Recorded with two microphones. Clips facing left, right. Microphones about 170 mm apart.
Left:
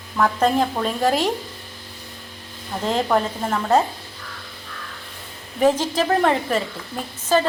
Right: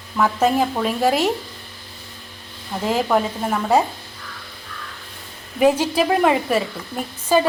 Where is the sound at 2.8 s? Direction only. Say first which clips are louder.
Right 1 dB; 5° right (ahead or behind).